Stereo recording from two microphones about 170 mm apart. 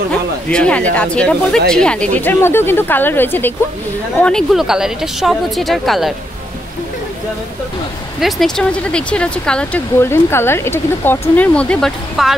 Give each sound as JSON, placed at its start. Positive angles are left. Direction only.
{"t": 0.1, "sound": "a sound", "side_deg": 5}
{"t": 0.9, "sound": "a woman's voice", "side_deg": 5}
{"t": 8.2, "sound": "speech", "side_deg": 0}